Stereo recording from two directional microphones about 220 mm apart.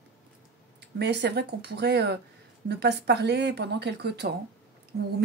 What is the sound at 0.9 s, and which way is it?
Speech, 50° right (ahead or behind).